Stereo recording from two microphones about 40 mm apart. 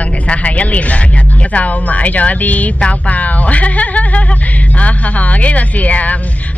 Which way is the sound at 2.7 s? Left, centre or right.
Left.